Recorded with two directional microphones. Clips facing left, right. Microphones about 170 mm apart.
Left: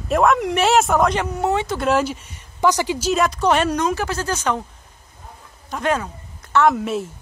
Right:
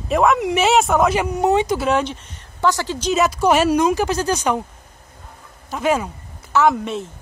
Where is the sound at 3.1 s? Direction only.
5° right (ahead or behind).